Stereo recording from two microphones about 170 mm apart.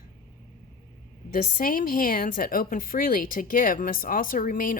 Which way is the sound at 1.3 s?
60° left (ahead or behind).